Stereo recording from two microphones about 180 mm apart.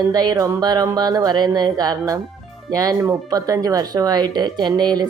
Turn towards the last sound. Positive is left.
turn(degrees=-20)  # may be behind; listen again after turning